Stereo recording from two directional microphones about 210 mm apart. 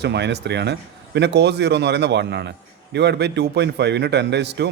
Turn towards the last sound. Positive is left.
turn(degrees=-55)  # may be behind; listen again after turning